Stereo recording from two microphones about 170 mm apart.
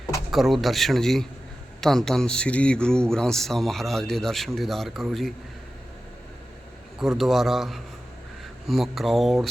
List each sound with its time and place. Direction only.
0.3 s speech: centre (ahead or behind)
7.0 s speech: centre (ahead or behind)